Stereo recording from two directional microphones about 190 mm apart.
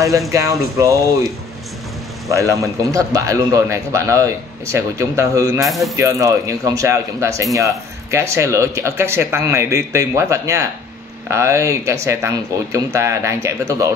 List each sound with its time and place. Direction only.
0.3 s a man's voice: 15° right (ahead or behind)
2.3 s a man's voice: 15° right (ahead or behind)
5.7 s speech: centre (ahead or behind)
5.9 s a man's voice: 15° right (ahead or behind)